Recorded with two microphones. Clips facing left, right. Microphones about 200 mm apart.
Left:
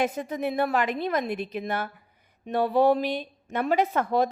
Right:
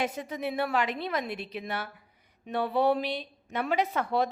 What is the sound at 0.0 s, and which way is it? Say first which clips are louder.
Speech: left 5 dB; 50° left (ahead or behind).